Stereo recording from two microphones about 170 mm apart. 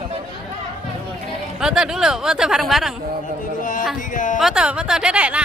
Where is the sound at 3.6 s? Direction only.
50° left (ahead or behind).